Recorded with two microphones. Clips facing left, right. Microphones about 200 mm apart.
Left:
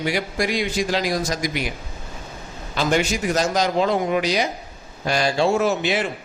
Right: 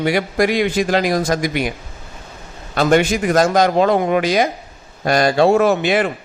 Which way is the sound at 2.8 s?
55° right (ahead or behind).